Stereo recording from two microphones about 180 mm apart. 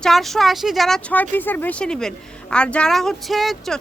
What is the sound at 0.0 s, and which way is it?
Speech, centre (ahead or behind).